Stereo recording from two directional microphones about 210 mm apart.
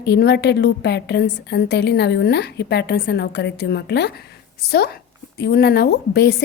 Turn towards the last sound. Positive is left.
turn(degrees=50)  # may be behind; listen again after turning